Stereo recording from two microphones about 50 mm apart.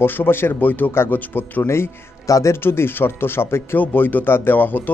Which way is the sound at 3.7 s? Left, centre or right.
Left.